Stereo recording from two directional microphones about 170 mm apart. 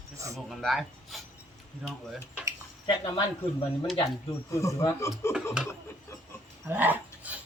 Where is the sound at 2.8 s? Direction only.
30° left (ahead or behind).